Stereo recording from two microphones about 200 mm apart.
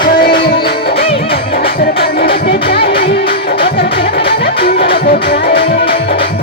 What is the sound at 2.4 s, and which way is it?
Music, 55° left (ahead or behind).